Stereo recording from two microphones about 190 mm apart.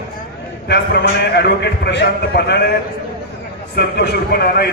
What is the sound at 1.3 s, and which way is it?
A man's voice, 60° left (ahead or behind).